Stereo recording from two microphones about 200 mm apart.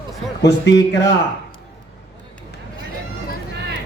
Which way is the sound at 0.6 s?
60° left (ahead or behind).